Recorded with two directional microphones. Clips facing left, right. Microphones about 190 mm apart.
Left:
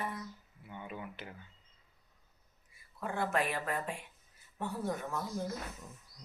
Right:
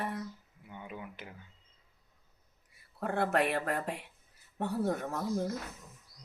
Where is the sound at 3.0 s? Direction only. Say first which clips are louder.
Right 4 dB; 65° right (ahead or behind).